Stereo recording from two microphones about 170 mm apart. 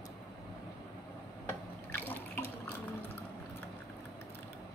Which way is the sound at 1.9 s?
10° left (ahead or behind).